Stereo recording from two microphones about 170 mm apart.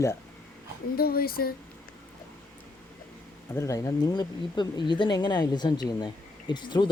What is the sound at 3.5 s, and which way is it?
Speech, 15° left (ahead or behind).